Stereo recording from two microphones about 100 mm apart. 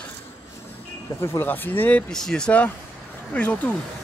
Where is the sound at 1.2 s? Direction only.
20° left (ahead or behind).